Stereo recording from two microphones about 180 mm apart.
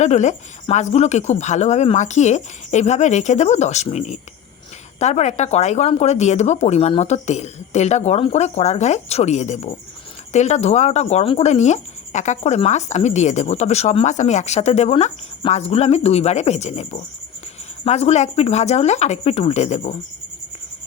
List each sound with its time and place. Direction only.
0.0 s speech: 40° left (ahead or behind)